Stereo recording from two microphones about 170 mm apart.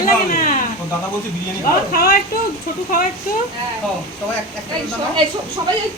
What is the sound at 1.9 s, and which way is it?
Speech, 60° left (ahead or behind).